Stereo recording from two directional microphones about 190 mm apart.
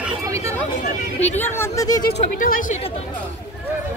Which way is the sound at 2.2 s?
45° left (ahead or behind).